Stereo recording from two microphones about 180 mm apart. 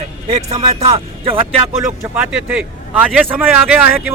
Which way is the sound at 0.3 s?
30° right (ahead or behind).